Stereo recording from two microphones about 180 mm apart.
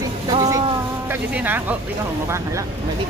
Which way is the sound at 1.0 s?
10° right (ahead or behind).